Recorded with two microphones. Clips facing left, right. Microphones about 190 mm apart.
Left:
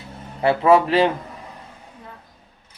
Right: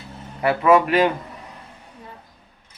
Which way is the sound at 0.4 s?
30° left (ahead or behind).